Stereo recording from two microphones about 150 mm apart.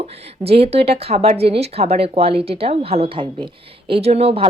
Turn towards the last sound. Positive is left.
turn(degrees=-40)  # may be behind; listen again after turning